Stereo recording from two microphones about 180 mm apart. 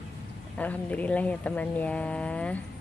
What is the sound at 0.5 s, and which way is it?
Speech, 10° left (ahead or behind).